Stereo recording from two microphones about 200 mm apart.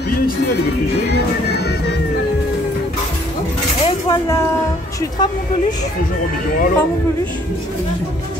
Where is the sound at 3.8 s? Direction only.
15° left (ahead or behind).